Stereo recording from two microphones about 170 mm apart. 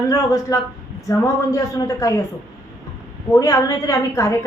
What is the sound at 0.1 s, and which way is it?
A woman's voice, 20° left (ahead or behind).